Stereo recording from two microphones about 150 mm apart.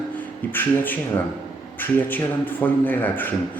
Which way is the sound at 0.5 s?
15° left (ahead or behind).